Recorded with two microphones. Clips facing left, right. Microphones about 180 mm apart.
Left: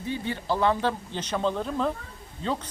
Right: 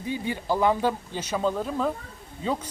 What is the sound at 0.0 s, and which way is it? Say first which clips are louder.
Speech: right 1 dB; 10° right (ahead or behind).